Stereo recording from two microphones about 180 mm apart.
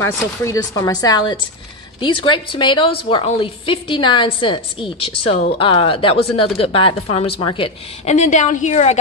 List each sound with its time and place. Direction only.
0.0 s a woman's voice: 15° left (ahead or behind); by 8.9 s 40° left (ahead or behind)